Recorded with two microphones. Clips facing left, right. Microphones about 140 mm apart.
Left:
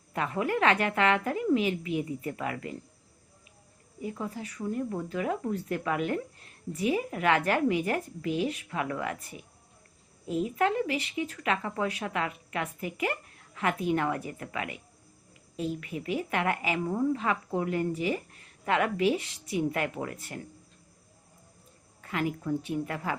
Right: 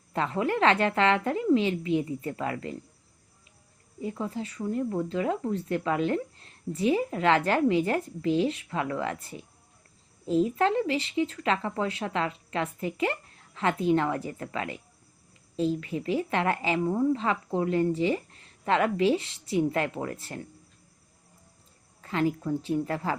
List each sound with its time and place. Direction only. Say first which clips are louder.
0.1 s speech: right 2 dB; 25° right (ahead or behind)
4.0 s speech: right 3 dB; 25° right (ahead or behind)
22.0 s speech: right 4 dB; 30° right (ahead or behind)